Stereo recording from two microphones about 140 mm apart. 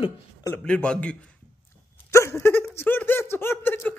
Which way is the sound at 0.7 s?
5° left (ahead or behind).